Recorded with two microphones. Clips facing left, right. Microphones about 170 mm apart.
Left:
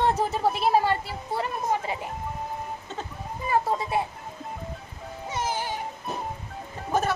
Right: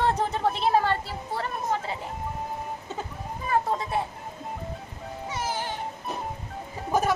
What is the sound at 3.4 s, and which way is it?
Speech, 10° left (ahead or behind).